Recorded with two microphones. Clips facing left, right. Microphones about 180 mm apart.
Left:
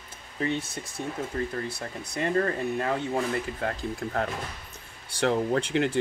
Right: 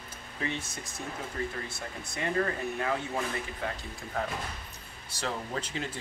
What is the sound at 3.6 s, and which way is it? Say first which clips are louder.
Speech: left 7 dB; 55° left (ahead or behind).